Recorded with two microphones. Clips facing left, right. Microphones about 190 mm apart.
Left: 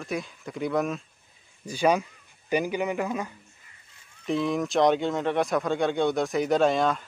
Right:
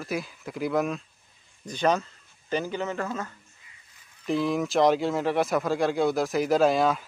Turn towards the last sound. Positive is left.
turn(degrees=-5)  # may be behind; listen again after turning